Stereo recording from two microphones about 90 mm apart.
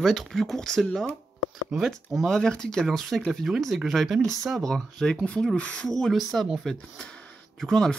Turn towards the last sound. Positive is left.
turn(degrees=5)  # may be behind; listen again after turning